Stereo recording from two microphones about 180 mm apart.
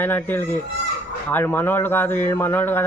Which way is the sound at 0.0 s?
10° left (ahead or behind).